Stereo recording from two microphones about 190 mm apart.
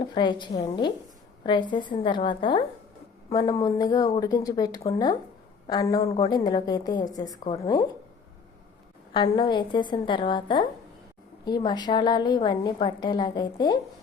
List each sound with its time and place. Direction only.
0.0 s a woman's voice: 25° left (ahead or behind)
6.1 s a woman's voice: 30° left (ahead or behind)
9.1 s a woman's voice: 20° left (ahead or behind)